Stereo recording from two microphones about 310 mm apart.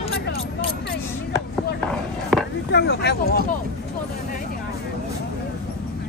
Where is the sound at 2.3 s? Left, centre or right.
Centre.